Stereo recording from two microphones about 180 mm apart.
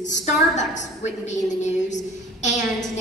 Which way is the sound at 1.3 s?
40° left (ahead or behind).